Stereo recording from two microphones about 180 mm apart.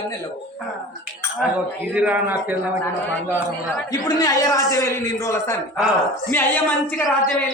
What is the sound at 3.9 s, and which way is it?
A man's voice, 20° left (ahead or behind).